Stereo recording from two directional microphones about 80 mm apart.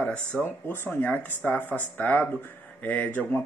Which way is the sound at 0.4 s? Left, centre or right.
Left.